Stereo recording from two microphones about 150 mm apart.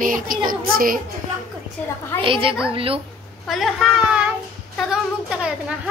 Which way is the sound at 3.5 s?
Centre (ahead or behind).